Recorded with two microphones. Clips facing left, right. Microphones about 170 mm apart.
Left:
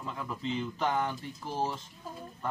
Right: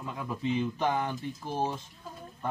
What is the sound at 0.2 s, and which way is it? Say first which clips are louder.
Speech: right 5 dB; 20° right (ahead or behind).